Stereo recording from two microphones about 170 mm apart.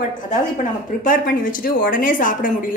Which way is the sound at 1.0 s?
55° left (ahead or behind).